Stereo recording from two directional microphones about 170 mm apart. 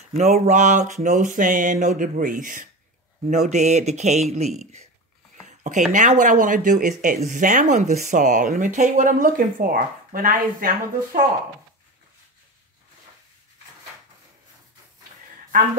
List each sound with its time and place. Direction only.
0.1 s speech: 40° right (ahead or behind)
5.5 s a sound: 45° right (ahead or behind)
5.9 s speech: 45° right (ahead or behind)